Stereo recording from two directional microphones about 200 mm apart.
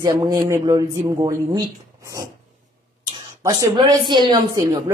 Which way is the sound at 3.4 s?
15° right (ahead or behind).